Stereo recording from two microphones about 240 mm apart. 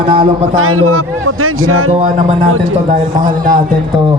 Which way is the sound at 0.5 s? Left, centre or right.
Right.